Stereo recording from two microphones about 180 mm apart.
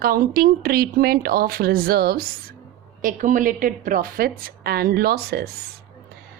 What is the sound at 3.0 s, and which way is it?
A woman's voice, 45° right (ahead or behind).